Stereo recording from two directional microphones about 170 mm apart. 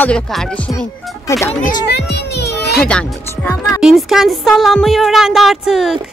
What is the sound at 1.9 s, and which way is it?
Children playing, 80° left.